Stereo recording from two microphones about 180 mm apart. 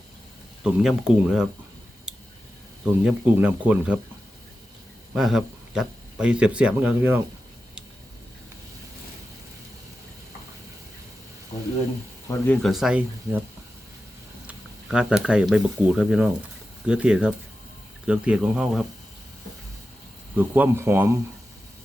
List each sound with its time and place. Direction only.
0.6 s speech: 5° right (ahead or behind)
2.1 s a sound: 5° right (ahead or behind)
2.8 s speech: 5° right (ahead or behind)
5.1 s speech: 5° right (ahead or behind)
11.5 s a sound: 45° left (ahead or behind)
12.3 s speech: 20° left (ahead or behind)
12.6 s speech: centre (ahead or behind)
14.4 s speech: 5° right (ahead or behind)
20.3 s speech: 10° right (ahead or behind)